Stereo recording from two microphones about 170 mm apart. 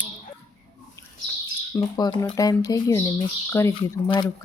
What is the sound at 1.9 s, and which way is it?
Speech, 25° left (ahead or behind).